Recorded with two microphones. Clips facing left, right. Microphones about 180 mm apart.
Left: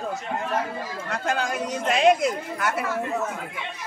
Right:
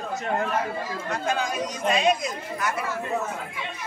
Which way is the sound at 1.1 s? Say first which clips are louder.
Left 1 dB; 70° left (ahead or behind).